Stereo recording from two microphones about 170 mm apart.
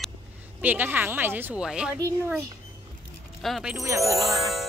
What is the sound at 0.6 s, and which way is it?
A child's voice, 10° right (ahead or behind).